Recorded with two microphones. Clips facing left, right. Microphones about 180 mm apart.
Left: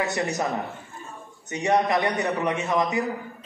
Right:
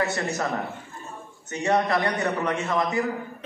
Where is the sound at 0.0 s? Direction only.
15° left (ahead or behind).